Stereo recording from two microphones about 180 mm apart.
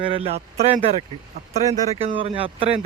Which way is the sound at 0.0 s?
30° right (ahead or behind).